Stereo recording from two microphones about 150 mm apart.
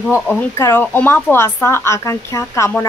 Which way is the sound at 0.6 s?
15° left (ahead or behind).